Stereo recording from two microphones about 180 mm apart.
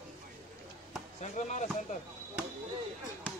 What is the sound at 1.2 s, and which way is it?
Speech, 40° left (ahead or behind).